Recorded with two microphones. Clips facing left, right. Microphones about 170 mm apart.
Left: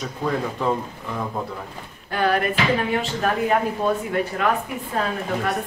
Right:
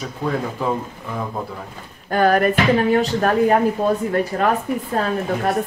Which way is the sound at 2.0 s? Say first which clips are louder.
Right 5 dB; 45° right (ahead or behind).